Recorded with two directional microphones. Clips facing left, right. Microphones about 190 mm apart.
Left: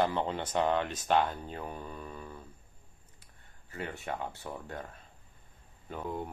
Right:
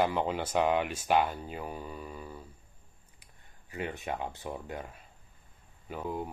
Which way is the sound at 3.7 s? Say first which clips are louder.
Right 2 dB; 15° right (ahead or behind).